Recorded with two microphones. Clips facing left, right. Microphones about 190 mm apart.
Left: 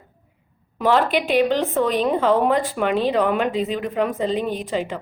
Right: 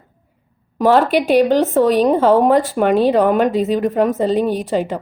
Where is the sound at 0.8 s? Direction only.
45° right (ahead or behind).